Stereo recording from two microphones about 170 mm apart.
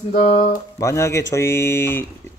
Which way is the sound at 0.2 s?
35° left (ahead or behind).